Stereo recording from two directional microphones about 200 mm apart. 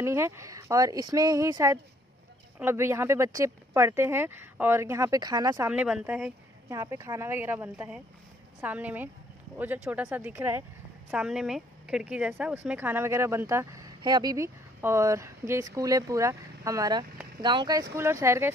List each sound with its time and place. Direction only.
0.0 s speech: 15° right (ahead or behind)
5.7 s speech: 5° right (ahead or behind)
6.7 s speech: 15° right (ahead or behind)